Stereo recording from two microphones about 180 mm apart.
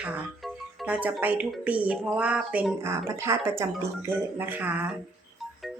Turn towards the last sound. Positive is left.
turn(degrees=-10)  # may be behind; listen again after turning